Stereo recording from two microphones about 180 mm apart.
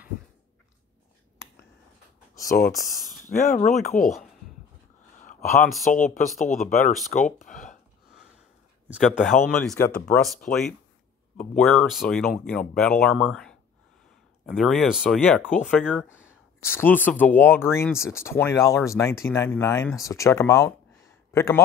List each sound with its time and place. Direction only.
2.4 s speech: 50° left (ahead or behind)
5.2 s a sound: 45° left (ahead or behind)
5.9 s speech: 45° left (ahead or behind)
8.8 s speech: centre (ahead or behind)
10.5 s speech: 45° left (ahead or behind)
11.3 s speech: 5° left (ahead or behind)
16.6 s speech: 10° left (ahead or behind)